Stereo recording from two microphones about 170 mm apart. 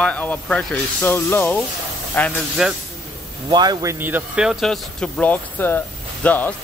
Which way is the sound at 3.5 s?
25° right (ahead or behind).